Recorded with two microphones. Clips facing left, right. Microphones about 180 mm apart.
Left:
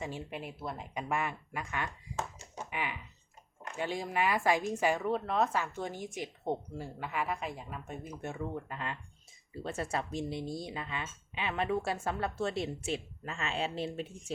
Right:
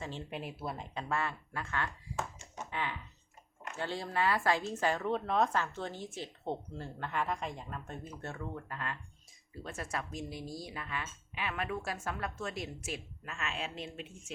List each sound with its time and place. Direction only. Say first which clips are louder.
0.0 s speech: left 1 dB; 10° left (ahead or behind)
0.9 s a woman's voice: left 2 dB; 15° left (ahead or behind)
2.6 s typing: even; 15° left (ahead or behind)
3.8 s a woman's voice: left 2 dB; 15° left (ahead or behind); by 14.3 s 35° left (ahead or behind)